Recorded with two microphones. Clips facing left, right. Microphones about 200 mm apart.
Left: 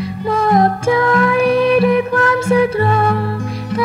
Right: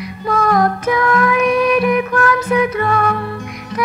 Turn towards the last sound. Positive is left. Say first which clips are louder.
# left 2 dB
turn(degrees=30)  # may be behind; listen again after turning